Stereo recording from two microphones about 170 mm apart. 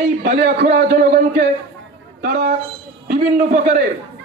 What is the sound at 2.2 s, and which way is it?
A man's voice, 55° right (ahead or behind).